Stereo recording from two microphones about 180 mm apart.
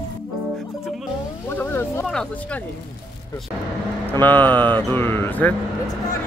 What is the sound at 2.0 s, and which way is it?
Speech, 5° left (ahead or behind).